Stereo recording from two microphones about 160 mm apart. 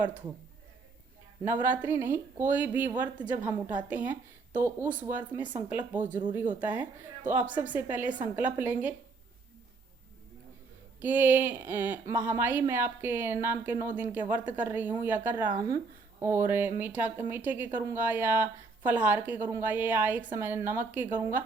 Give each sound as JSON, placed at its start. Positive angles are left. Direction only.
{"t": 0.0, "sound": "a woman's voice", "side_deg": -10}
{"t": 1.5, "sound": "a woman's voice", "side_deg": -10}
{"t": 6.0, "sound": "speech", "side_deg": -55}
{"t": 6.6, "sound": "a woman's voice", "side_deg": -10}
{"t": 11.0, "sound": "a woman's voice", "side_deg": -10}